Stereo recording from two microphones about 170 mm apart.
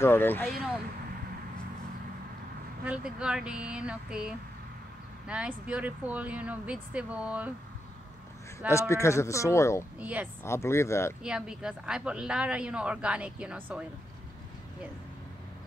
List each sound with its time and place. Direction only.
0.0 s speech: 15° left (ahead or behind)
2.8 s speech: 5° right (ahead or behind)
8.5 s speech: 15° left (ahead or behind)
9.9 s speech: 10° right (ahead or behind)
10.4 s speech: 15° left (ahead or behind)
11.2 s a woman's voice: 5° right (ahead or behind)